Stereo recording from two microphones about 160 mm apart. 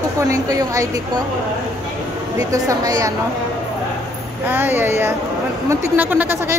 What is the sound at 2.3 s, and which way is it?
Speech, 20° right (ahead or behind).